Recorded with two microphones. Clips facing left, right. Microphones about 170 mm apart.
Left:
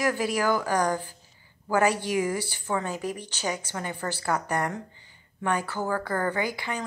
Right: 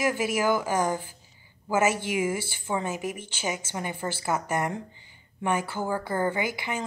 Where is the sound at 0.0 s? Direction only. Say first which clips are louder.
Even; 20° right (ahead or behind).